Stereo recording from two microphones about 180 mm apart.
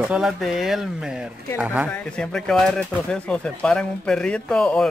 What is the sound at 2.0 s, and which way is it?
Speech, 5° left (ahead or behind).